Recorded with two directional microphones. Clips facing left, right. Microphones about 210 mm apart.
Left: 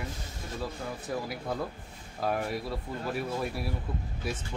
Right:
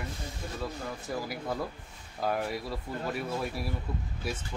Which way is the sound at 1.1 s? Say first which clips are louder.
Even; centre (ahead or behind).